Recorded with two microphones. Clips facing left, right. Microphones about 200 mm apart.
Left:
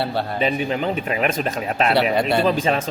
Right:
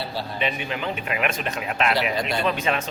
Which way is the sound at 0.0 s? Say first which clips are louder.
Left 7 dB; 60° left (ahead or behind).